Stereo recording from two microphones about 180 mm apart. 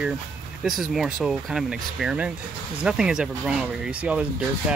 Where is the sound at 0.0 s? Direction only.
5° right (ahead or behind).